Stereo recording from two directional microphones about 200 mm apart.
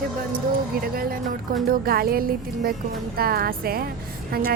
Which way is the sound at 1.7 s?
50° right (ahead or behind).